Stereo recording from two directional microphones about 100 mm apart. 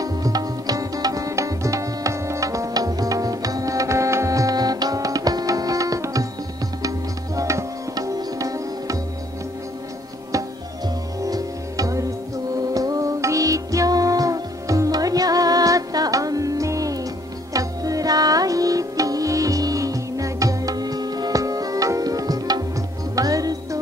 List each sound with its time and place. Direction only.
0.0 s music: 35° right (ahead or behind)
7.3 s tabla: 35° right (ahead or behind)
11.2 s music: 35° right (ahead or behind)